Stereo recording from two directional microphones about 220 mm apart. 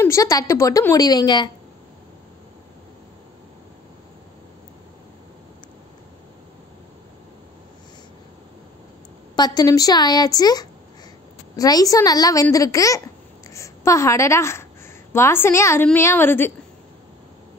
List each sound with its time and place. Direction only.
0.0 s a child's voice: 15° left (ahead or behind)
9.3 s a child's voice: 20° left (ahead or behind)